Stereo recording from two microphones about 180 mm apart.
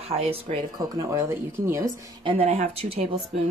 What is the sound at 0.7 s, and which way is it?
Speech, 20° right (ahead or behind).